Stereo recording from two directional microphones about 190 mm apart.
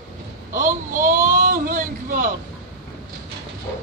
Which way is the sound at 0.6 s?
45° right (ahead or behind).